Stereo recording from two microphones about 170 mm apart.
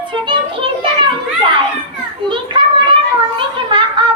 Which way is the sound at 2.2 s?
30° right (ahead or behind).